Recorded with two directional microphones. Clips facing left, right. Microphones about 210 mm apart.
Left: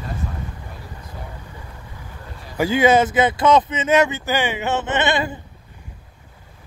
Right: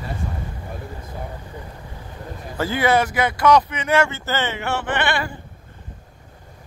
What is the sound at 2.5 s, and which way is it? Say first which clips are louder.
Speech: left 4 dB; 15° left (ahead or behind).